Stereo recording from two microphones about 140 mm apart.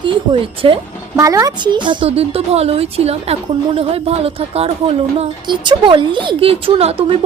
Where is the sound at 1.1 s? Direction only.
25° right (ahead or behind).